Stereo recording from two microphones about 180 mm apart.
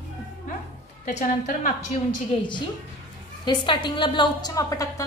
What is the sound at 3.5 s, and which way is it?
A woman's voice, 25° left (ahead or behind).